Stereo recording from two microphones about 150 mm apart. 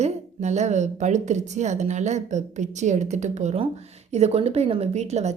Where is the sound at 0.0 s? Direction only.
50° right (ahead or behind).